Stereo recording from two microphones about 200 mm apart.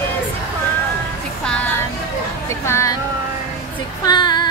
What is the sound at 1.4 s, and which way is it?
A woman's voice, 5° left (ahead or behind).